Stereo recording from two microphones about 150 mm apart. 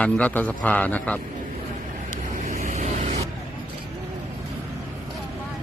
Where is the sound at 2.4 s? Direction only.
55° right (ahead or behind).